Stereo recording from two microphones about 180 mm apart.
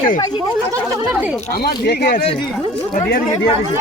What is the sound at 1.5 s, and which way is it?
Speech, 65° left (ahead or behind).